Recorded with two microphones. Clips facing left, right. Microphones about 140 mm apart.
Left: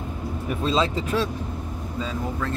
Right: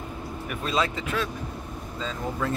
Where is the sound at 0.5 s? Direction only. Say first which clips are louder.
Left 4 dB; 25° left (ahead or behind).